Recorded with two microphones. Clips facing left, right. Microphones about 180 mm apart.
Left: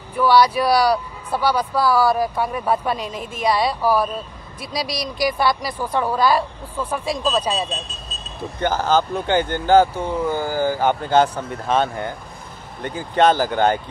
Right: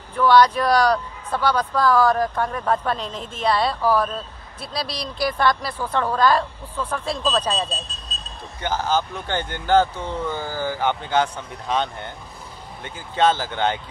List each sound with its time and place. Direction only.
0.1 s speech: 10° left (ahead or behind)
8.5 s speech: 50° left (ahead or behind)
9.8 s speech: 10° left (ahead or behind)
10.3 s speech: 45° left (ahead or behind)
12.9 s speech: 55° left (ahead or behind)